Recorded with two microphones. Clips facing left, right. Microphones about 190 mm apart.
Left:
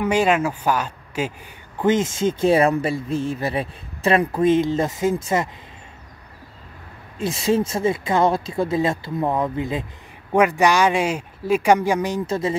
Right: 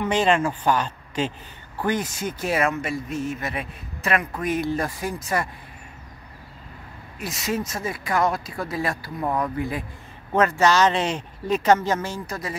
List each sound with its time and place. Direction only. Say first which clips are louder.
0.0 s speech: left 2 dB; 10° left (ahead or behind)
1.8 s speech: left 6 dB; 20° left (ahead or behind)
7.2 s speech: left 7 dB; 30° left (ahead or behind)